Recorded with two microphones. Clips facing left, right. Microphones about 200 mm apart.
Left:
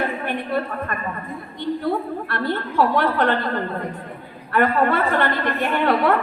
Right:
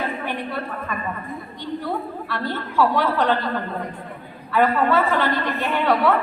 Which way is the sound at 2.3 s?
55° left (ahead or behind).